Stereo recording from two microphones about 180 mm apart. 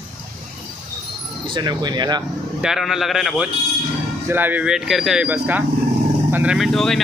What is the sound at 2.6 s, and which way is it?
Speech, centre (ahead or behind).